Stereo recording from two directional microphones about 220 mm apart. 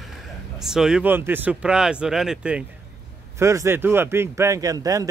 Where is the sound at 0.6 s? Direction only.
Centre (ahead or behind).